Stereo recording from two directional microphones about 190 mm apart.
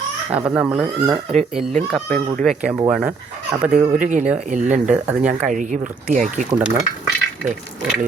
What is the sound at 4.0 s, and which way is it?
Speech, 40° right (ahead or behind).